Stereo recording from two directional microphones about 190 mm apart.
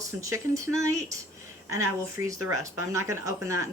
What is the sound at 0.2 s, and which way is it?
Speech, 15° right (ahead or behind).